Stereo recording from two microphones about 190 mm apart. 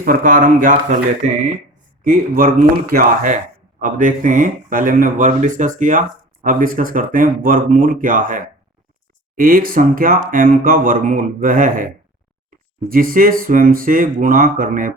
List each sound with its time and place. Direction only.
0.0 s speech: 45° right (ahead or behind)
2.0 s speech: 50° right (ahead or behind)